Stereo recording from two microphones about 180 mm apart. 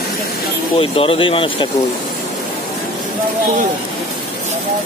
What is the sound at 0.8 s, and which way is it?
Speech, 30° left (ahead or behind).